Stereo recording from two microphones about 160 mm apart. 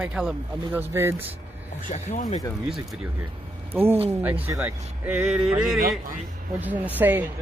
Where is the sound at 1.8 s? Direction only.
45° left (ahead or behind).